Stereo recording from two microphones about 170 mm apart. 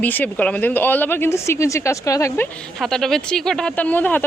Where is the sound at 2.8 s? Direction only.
Centre (ahead or behind).